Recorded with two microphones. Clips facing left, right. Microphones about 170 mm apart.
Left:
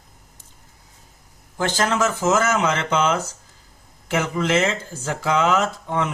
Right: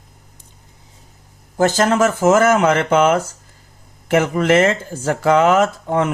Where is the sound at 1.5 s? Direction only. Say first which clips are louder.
Right 7 dB; 45° right (ahead or behind).